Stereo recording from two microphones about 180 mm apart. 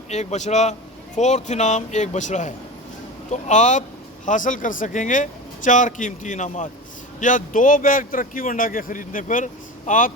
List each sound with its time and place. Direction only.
0.1 s a man's voice: 40° left (ahead or behind)